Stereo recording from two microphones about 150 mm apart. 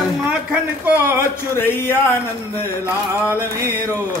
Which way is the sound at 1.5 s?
15° left (ahead or behind).